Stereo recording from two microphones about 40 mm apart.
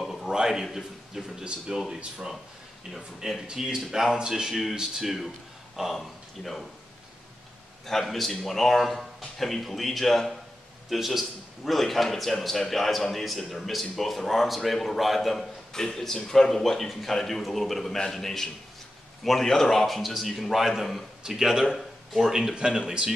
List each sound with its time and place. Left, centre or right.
0.0 s a sound: centre
0.3 s a sound: centre
0.7 s speech: centre
1.2 s speech: centre
3.5 s speech: centre
5.9 s speech: centre
7.8 s a man's voice: centre
19.9 s speech: centre
21.6 s a sound: centre
22.2 s speech: centre